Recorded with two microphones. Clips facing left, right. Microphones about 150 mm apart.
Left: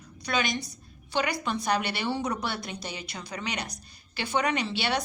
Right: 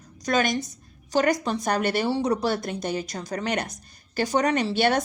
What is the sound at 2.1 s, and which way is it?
A woman's voice, 35° right (ahead or behind).